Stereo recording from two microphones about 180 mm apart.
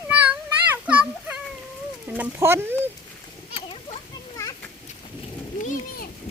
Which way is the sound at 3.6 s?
35° left (ahead or behind).